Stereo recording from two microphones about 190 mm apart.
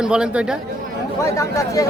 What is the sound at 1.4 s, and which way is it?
Speech, 15° left (ahead or behind).